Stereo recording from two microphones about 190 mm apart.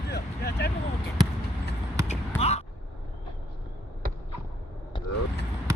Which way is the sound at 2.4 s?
35° left (ahead or behind).